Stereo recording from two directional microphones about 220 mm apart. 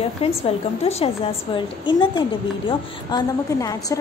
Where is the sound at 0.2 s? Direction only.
25° left (ahead or behind).